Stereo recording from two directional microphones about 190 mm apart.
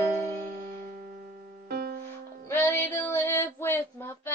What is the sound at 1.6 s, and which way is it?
Music, 55° right (ahead or behind).